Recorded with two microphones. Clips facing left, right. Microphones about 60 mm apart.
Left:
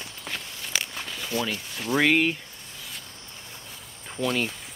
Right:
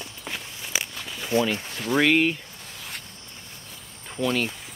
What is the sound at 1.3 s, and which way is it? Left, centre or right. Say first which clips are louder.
Speech: right 6 dB; right.